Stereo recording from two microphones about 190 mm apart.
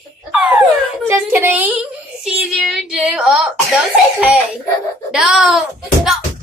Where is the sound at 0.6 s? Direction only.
10° right (ahead or behind).